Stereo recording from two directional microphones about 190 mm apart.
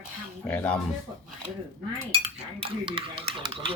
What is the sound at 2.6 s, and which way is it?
Speech, 30° right (ahead or behind).